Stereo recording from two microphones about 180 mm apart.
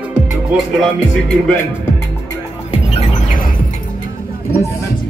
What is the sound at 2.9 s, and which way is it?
Music, 40° left (ahead or behind).